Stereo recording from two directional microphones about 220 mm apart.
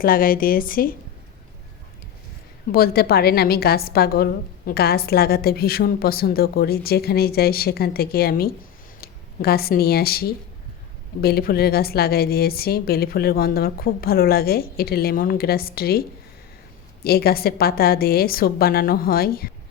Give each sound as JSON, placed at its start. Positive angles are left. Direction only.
{"t": 0.0, "sound": "a woman's voice", "side_deg": 40}
{"t": 2.7, "sound": "a woman's voice", "side_deg": 45}